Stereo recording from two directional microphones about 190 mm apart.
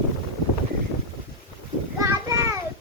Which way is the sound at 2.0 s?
15° right (ahead or behind).